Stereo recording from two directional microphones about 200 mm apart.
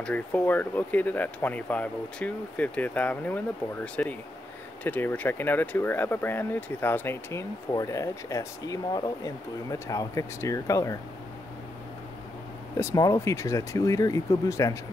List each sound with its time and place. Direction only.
0.0 s speech: 10° left (ahead or behind)
12.7 s speech: 15° left (ahead or behind)